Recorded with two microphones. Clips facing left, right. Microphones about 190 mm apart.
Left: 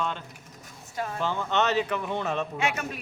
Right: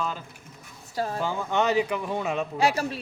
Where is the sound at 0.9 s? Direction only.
35° right (ahead or behind).